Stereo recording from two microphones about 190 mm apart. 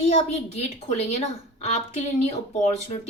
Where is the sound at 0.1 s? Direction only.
35° left (ahead or behind).